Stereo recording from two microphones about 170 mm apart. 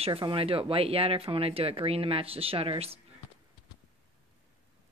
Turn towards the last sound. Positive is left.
turn(degrees=-35)  # may be behind; listen again after turning